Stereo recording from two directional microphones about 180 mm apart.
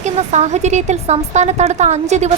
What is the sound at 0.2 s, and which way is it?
Speech, 40° right (ahead or behind).